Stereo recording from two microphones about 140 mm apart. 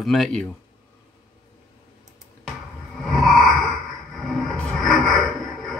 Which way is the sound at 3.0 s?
Centre (ahead or behind).